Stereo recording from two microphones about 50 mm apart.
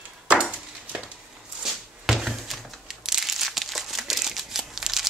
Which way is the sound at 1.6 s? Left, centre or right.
Centre.